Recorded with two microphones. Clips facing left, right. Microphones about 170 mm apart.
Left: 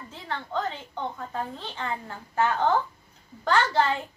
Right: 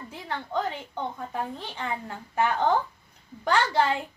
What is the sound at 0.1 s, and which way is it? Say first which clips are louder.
A woman's voice: right 1 dB; 15° right (ahead or behind).